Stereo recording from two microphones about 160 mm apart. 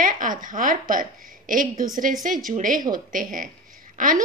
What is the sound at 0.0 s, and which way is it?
A woman's voice, 55° right (ahead or behind).